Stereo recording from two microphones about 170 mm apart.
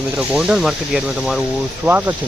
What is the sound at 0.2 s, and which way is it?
Speech, 5° right (ahead or behind).